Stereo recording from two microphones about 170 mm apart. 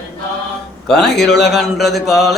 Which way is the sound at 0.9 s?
5° left (ahead or behind).